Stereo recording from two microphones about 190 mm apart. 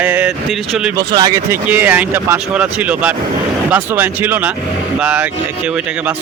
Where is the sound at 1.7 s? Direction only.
10° right (ahead or behind).